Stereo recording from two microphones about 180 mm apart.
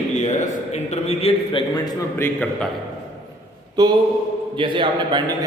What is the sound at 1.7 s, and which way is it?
Speech, 20° left (ahead or behind).